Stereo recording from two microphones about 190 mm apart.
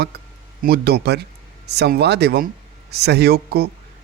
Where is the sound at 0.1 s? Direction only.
60° right (ahead or behind).